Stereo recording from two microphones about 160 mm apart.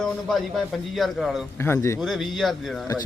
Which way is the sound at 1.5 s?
15° left (ahead or behind).